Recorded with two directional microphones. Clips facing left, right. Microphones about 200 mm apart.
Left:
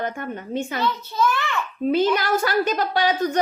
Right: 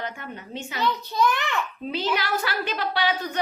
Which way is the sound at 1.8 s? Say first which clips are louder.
Left 9 dB; 50° left (ahead or behind).